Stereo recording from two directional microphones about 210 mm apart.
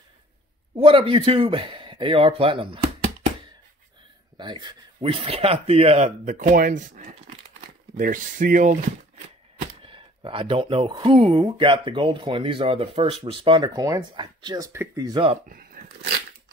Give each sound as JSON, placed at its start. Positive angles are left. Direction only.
{"t": 0.7, "sound": "speech", "side_deg": -25}
{"t": 4.4, "sound": "speech", "side_deg": -20}
{"t": 9.6, "sound": "speech", "side_deg": -25}
{"t": 15.4, "sound": "a sound", "side_deg": -45}